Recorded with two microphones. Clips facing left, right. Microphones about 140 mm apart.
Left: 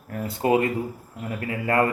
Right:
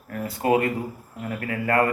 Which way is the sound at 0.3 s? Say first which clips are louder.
Even; 25° left (ahead or behind).